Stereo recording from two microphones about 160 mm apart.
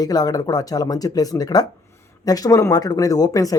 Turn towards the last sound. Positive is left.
turn(degrees=20)  # may be behind; listen again after turning